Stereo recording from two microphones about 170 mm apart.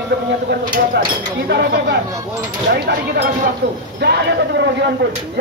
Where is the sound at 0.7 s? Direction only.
60° right (ahead or behind).